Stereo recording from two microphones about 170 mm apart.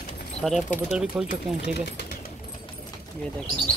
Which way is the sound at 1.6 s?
75° left (ahead or behind).